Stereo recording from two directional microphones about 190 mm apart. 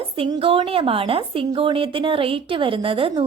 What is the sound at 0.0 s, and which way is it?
A woman's voice, 30° right (ahead or behind).